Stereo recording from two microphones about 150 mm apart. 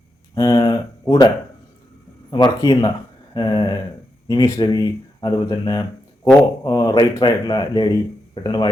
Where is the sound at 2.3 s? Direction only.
25° left (ahead or behind).